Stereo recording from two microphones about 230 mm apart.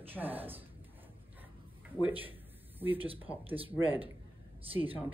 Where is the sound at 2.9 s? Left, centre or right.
Right.